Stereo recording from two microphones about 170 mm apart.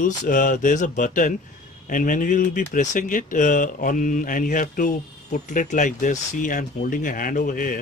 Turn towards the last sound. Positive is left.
turn(degrees=50)  # may be behind; listen again after turning